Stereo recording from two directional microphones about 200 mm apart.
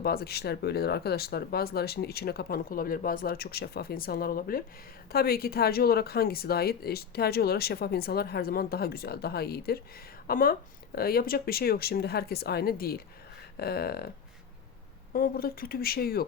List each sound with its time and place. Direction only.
0.0 s speech: 50° left (ahead or behind)
15.1 s speech: 45° left (ahead or behind)